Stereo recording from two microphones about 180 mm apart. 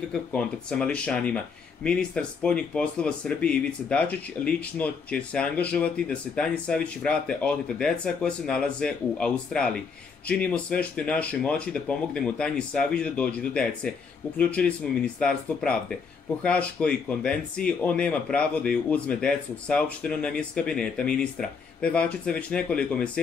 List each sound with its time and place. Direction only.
0.3 s speech: 5° left (ahead or behind)